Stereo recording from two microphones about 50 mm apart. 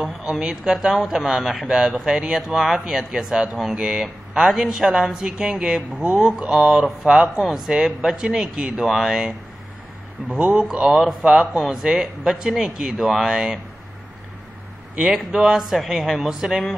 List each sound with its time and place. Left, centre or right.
0.0 s a man's voice: centre
6.5 s a man's voice: centre
10.4 s speech: centre
10.9 s a man's voice: centre
15.1 s a man's voice: centre